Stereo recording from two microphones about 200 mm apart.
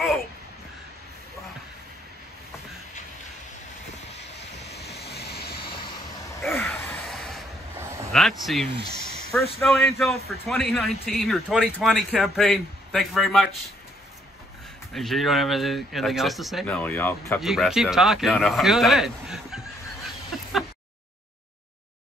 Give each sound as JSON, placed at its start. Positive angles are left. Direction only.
{"t": 4.9, "sound": "vehicle", "side_deg": 55}
{"t": 6.4, "sound": "a sound", "side_deg": 10}
{"t": 8.1, "sound": "a man's voice", "side_deg": 0}
{"t": 15.0, "sound": "a man's voice", "side_deg": 0}
{"t": 17.4, "sound": "a man's voice", "side_deg": 0}